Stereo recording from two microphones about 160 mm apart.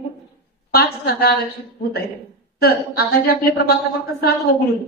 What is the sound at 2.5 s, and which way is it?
A woman's voice, 75° left (ahead or behind).